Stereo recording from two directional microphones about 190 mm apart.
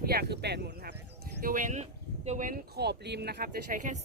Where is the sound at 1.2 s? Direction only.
45° right (ahead or behind).